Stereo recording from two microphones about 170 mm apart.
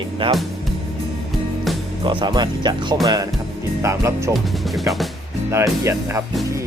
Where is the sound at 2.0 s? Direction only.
25° right (ahead or behind).